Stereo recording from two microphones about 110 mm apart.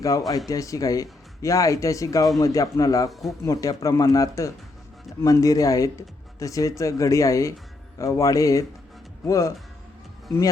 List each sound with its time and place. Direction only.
0.3 s speech: 35° left (ahead or behind)
3.1 s speech: centre (ahead or behind)
3.4 s a man's voice: 35° left (ahead or behind)